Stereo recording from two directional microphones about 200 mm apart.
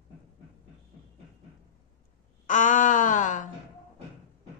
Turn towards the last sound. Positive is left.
turn(degrees=40)  # may be behind; listen again after turning